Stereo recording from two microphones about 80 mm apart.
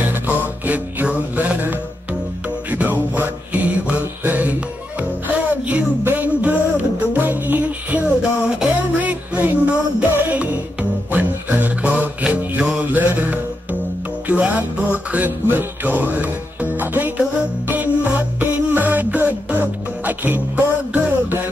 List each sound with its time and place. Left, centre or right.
0.1 s music: right